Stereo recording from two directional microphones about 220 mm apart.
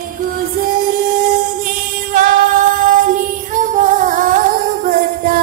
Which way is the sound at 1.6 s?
40° right (ahead or behind).